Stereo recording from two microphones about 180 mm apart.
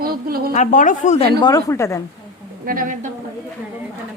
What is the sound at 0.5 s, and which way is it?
Speech, 45° left (ahead or behind).